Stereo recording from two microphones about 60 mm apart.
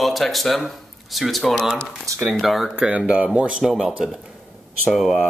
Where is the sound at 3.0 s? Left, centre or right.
Right; by 5.1 s centre.